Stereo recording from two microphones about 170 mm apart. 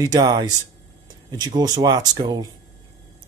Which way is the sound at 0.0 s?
20° right (ahead or behind).